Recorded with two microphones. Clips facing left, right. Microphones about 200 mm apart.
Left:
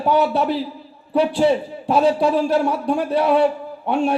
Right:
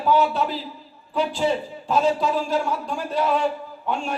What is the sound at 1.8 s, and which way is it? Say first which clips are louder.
A man's voice: left 4 dB; 65° left (ahead or behind).